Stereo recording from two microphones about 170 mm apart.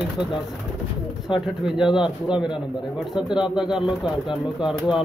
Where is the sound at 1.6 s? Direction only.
5° right (ahead or behind).